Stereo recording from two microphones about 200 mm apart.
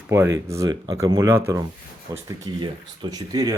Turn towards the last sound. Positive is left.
turn(degrees=-20)  # may be behind; listen again after turning